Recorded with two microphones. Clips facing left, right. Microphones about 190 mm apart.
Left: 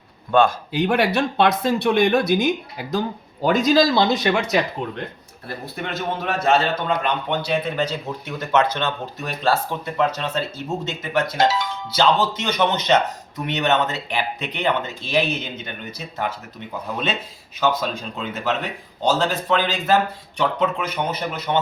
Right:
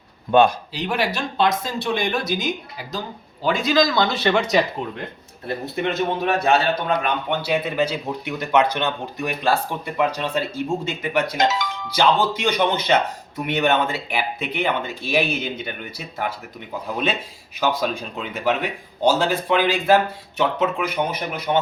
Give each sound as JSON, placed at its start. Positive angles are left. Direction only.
{"t": 0.3, "sound": "speech", "side_deg": -15}
{"t": 0.7, "sound": "speech", "side_deg": 55}
{"t": 3.4, "sound": "speech", "side_deg": 40}
{"t": 4.1, "sound": "speech", "side_deg": 10}
{"t": 5.5, "sound": "a man's voice", "side_deg": -20}
{"t": 17.6, "sound": "speech", "side_deg": -10}